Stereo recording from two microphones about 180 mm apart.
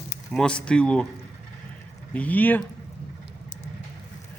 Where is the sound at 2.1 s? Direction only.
10° left (ahead or behind).